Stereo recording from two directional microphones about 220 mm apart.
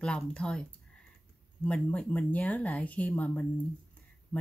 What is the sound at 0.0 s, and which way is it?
Speech, 5° left (ahead or behind).